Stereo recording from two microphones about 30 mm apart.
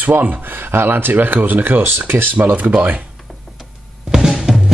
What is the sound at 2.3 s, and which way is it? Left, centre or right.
Speech, right.